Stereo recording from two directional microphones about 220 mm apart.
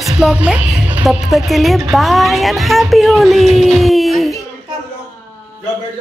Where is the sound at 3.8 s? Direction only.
Centre (ahead or behind).